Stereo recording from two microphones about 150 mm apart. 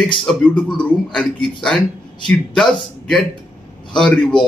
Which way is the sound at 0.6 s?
30° left (ahead or behind).